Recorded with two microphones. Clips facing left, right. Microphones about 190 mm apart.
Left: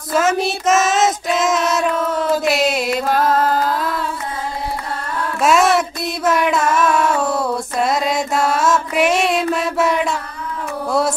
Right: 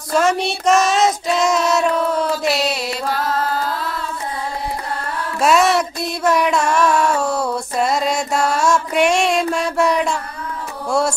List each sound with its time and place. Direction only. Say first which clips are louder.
0.1 s child singing: even; centre (ahead or behind)
2.4 s chant: left 3 dB; 50° left (ahead or behind)
5.4 s a sound: even; centre (ahead or behind)
10.9 s music: even; centre (ahead or behind)